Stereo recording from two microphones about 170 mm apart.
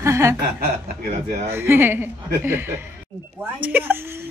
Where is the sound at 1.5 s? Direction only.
15° right (ahead or behind).